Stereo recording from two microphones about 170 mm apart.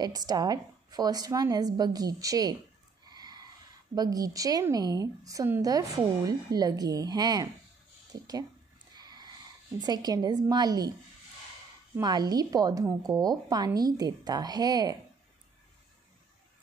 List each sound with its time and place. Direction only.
0.0 s a woman's voice: 25° right (ahead or behind)
3.1 s a sound: 25° right (ahead or behind)
3.9 s a woman's voice: 20° right (ahead or behind)
8.9 s snort: 25° right (ahead or behind)
9.8 s a woman's voice: 25° right (ahead or behind)
11.9 s a woman's voice: 25° right (ahead or behind)